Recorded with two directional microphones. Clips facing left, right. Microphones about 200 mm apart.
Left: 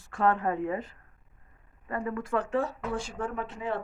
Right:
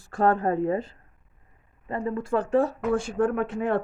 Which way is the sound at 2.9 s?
55° right (ahead or behind).